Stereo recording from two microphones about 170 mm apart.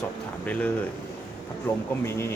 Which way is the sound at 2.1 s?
15° left (ahead or behind).